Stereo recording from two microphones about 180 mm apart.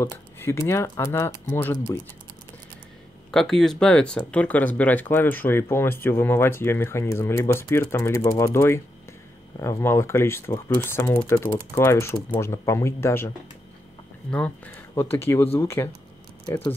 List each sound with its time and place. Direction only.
0.0 s speech: 15° left (ahead or behind)
3.3 s speech: centre (ahead or behind)
14.3 s speech: 10° left (ahead or behind)